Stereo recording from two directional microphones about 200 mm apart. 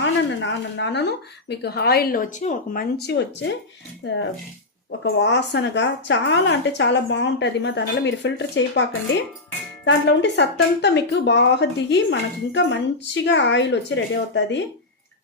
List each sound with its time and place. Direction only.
0.0 s speech: 65° left (ahead or behind); by 2.8 s 40° left (ahead or behind)
3.1 s speech: 55° left (ahead or behind)
4.9 s speech: 60° left (ahead or behind)